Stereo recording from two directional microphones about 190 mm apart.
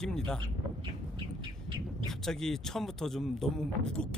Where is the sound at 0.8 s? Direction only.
25° right (ahead or behind).